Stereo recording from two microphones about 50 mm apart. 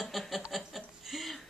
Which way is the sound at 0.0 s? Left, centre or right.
Centre.